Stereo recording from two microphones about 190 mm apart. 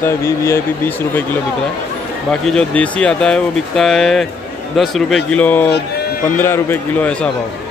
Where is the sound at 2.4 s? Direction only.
5° left (ahead or behind).